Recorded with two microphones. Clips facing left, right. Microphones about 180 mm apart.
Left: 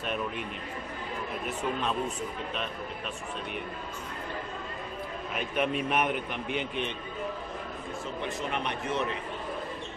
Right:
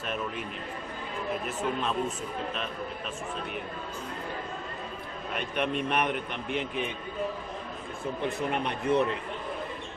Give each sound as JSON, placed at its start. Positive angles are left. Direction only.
{"t": 0.0, "sound": "a man's voice", "side_deg": 0}
{"t": 1.6, "sound": "a man's voice", "side_deg": 0}
{"t": 5.3, "sound": "a man's voice", "side_deg": 5}
{"t": 8.4, "sound": "speech", "side_deg": -55}